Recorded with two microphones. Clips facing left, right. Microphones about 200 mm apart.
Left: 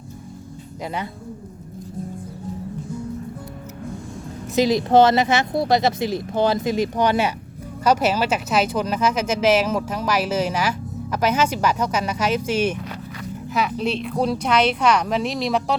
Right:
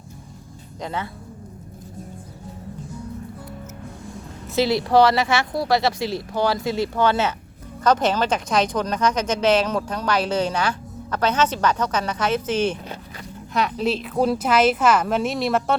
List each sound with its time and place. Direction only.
4.5 s a woman's voice: 15° left (ahead or behind); by 15.7 s centre (ahead or behind)